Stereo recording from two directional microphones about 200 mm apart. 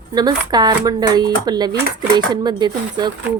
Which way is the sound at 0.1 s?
20° right (ahead or behind).